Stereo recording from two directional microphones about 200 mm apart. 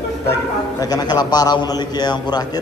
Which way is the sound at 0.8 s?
20° left (ahead or behind).